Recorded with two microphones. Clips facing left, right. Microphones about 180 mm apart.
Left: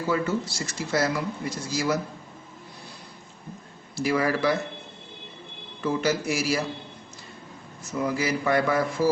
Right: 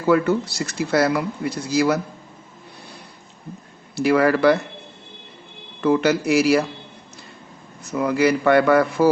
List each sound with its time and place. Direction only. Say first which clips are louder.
0.1 s speech: right 9 dB; 65° right (ahead or behind)
3.9 s speech: right 7 dB; 65° right (ahead or behind)
5.8 s speech: right 7 dB; 65° right (ahead or behind)
7.8 s speech: right 7 dB; 65° right (ahead or behind)